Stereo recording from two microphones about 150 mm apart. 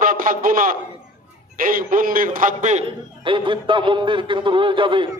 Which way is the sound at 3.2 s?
35° right (ahead or behind).